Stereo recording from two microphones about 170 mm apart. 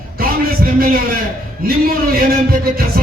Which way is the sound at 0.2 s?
60° right (ahead or behind).